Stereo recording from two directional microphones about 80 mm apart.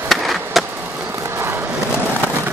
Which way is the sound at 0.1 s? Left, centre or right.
Centre.